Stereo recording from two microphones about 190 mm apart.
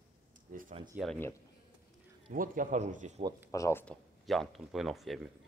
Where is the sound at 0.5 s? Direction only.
45° right (ahead or behind).